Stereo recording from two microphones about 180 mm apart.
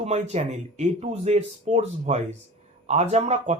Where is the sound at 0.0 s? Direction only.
40° right (ahead or behind).